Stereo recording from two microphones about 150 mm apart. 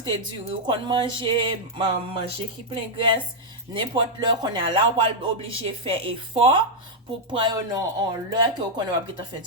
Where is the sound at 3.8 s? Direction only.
35° right (ahead or behind).